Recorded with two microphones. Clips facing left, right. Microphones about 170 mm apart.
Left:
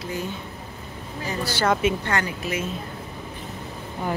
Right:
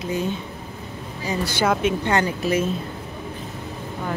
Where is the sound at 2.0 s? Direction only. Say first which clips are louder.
Right 5 dB; 25° right (ahead or behind).